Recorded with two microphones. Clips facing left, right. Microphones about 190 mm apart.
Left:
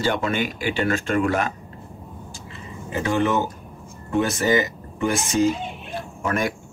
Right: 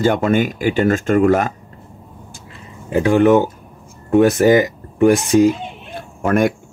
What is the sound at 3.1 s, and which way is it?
Speech, 55° right (ahead or behind).